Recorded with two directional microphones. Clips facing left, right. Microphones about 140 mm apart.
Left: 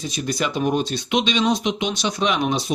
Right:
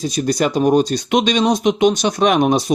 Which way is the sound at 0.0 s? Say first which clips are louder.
Right 7 dB; 40° right (ahead or behind).